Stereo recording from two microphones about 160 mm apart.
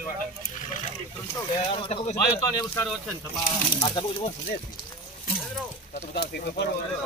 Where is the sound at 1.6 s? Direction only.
35° left (ahead or behind).